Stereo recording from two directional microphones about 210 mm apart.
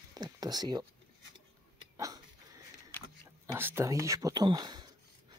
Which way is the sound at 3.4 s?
10° right (ahead or behind).